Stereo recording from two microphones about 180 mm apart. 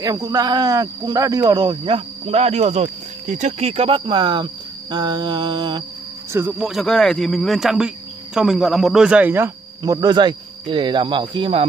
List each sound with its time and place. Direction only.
0.0 s speech: 20° right (ahead or behind)
6.3 s speech: 10° right (ahead or behind)
6.7 s speech: centre (ahead or behind); by 11.6 s 25° right (ahead or behind)